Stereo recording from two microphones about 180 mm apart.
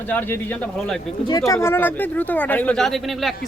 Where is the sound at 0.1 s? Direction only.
10° left (ahead or behind).